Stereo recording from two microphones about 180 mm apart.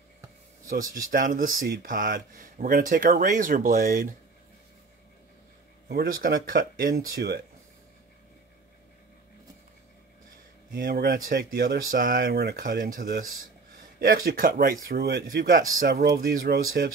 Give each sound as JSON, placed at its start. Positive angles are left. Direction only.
{"t": 0.7, "sound": "speech", "side_deg": -50}
{"t": 5.9, "sound": "speech", "side_deg": -55}
{"t": 10.7, "sound": "speech", "side_deg": -55}